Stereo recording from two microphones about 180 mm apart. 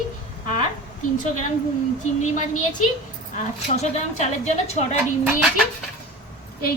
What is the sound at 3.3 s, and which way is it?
A woman's voice, 40° left (ahead or behind).